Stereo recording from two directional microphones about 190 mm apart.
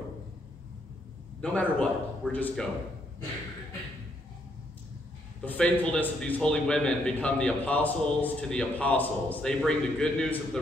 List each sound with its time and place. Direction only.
1.4 s a man's voice: 5° left (ahead or behind)
5.4 s a man's voice: 5° left (ahead or behind)